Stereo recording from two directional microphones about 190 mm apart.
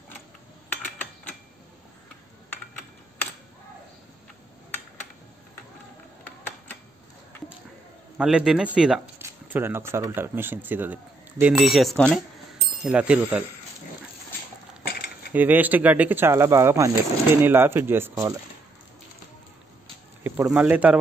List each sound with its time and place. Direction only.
8.2 s speech: 5° right (ahead or behind)
14.9 s cutlery: 55° left (ahead or behind)
15.3 s speech: 10° right (ahead or behind)
20.2 s speech: 10° right (ahead or behind)